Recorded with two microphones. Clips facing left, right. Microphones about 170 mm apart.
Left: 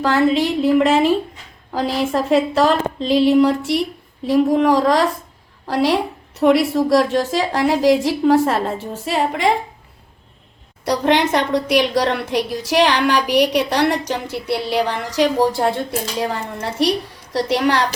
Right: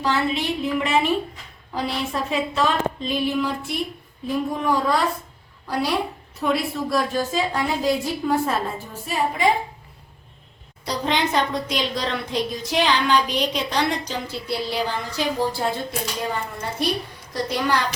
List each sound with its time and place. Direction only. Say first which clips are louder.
0.0 s a woman's voice: left 7 dB; 90° left
2.1 s a woman's voice: left 9 dB; 90° left
6.9 s a woman's voice: left 5 dB; 90° left
10.8 s a woman's voice: left 7 dB; 70° left (ahead or behind)
16.6 s a woman's voice: left 9 dB; 85° left
17.3 s a woman's voice: left 6 dB; 75° left (ahead or behind)